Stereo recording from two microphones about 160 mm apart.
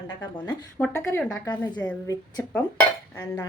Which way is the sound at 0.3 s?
20° left (ahead or behind).